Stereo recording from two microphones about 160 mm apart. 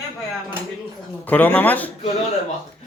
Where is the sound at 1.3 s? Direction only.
10° left (ahead or behind).